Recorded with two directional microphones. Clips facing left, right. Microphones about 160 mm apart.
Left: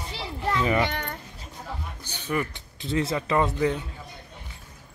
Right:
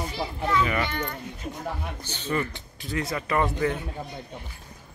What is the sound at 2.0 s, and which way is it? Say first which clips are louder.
Speech: even; 10° left (ahead or behind).